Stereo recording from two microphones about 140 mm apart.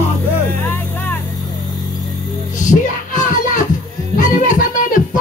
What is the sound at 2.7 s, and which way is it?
Music, 60° left (ahead or behind).